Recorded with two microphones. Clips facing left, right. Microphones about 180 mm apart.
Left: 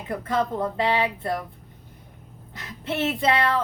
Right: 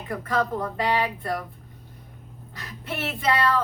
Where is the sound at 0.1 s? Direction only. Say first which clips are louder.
Left 1 dB; 20° left (ahead or behind).